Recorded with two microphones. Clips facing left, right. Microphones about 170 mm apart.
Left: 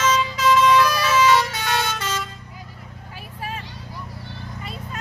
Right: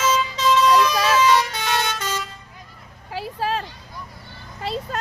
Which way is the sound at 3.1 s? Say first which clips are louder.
Right 9 dB; 90° right.